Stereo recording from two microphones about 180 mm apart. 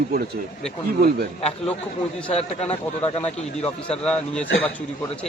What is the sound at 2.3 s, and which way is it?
Speech, 35° left (ahead or behind).